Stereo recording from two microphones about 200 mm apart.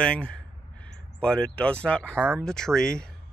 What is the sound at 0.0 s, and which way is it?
Speech, 5° left (ahead or behind).